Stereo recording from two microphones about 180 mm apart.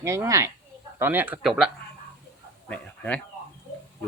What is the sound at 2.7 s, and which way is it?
Speech, 5° left (ahead or behind).